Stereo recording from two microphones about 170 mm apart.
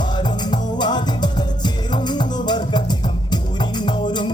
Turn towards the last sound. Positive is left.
turn(degrees=25)  # may be behind; listen again after turning